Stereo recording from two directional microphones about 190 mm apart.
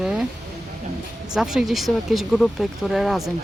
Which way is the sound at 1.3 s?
5° right (ahead or behind).